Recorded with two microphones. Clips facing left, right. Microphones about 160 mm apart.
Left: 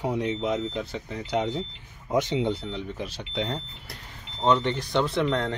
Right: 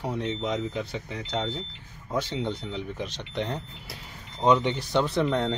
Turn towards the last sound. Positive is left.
turn(degrees=-10)  # may be behind; listen again after turning